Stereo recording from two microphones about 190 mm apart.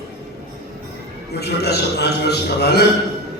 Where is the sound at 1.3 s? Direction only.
60° left (ahead or behind).